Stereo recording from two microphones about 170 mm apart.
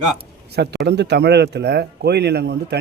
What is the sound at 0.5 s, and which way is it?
Speech, 80° right.